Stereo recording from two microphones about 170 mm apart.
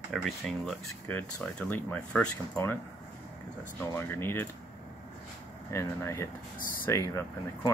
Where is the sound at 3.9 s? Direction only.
15° left (ahead or behind).